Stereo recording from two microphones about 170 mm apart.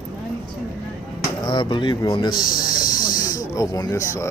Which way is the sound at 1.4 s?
25° left (ahead or behind).